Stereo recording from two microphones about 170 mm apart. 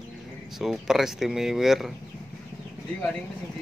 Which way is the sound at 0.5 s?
Centre (ahead or behind).